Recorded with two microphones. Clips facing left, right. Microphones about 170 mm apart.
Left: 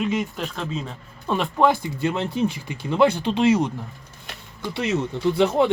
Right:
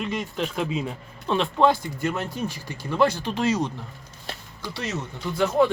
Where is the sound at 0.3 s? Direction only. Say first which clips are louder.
Right 2 dB; 10° right (ahead or behind).